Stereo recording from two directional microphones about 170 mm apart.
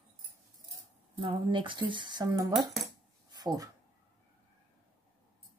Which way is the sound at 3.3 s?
25° right (ahead or behind).